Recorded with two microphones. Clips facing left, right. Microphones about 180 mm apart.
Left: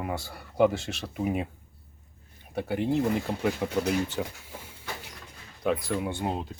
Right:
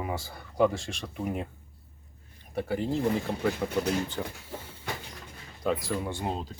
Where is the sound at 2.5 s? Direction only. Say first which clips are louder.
Left 2 dB; centre (ahead or behind).